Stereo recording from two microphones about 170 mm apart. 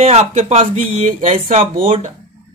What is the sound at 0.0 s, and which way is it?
Speech, 40° right (ahead or behind).